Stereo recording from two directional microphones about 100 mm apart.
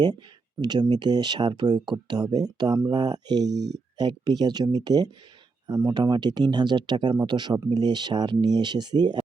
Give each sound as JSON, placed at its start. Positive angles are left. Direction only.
{"t": 0.6, "sound": "speech", "side_deg": -45}